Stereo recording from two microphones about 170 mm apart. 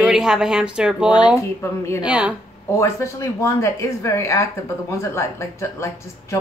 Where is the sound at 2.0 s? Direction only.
5° right (ahead or behind).